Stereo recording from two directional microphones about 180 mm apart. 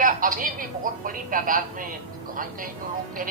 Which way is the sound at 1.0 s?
50° right (ahead or behind).